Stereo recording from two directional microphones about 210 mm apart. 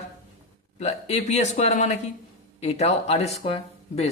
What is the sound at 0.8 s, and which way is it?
Speech, 30° left (ahead or behind).